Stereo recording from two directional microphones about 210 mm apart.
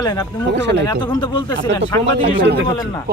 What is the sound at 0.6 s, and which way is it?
Speech, 55° right (ahead or behind).